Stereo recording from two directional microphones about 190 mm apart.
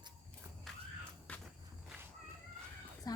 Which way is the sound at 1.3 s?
5° left (ahead or behind).